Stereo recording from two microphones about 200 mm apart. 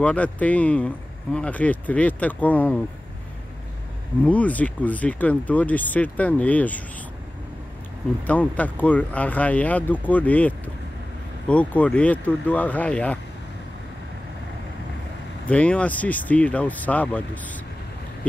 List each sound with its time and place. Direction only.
0.0 s speech: 5° left (ahead or behind)
4.2 s speech: 5° left (ahead or behind)
8.3 s speech: 10° left (ahead or behind)
15.4 s speech: 5° left (ahead or behind)